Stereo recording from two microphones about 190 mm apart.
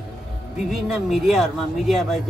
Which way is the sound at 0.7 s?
Centre (ahead or behind).